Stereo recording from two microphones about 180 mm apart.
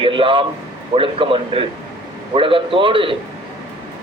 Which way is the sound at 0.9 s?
30° right (ahead or behind).